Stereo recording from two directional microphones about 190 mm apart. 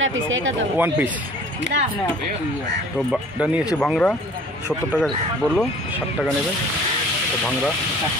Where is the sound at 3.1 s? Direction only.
5° right (ahead or behind).